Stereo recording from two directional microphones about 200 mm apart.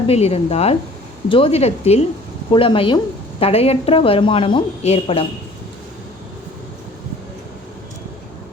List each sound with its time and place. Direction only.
0.1 s a woman's voice: 30° left (ahead or behind)